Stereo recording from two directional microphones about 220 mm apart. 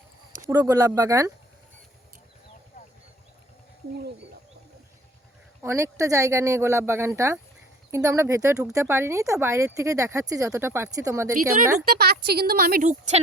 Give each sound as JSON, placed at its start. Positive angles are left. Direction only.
{"t": 0.4, "sound": "speech", "side_deg": -15}
{"t": 5.6, "sound": "speech", "side_deg": -15}
{"t": 11.9, "sound": "a woman's voice", "side_deg": -45}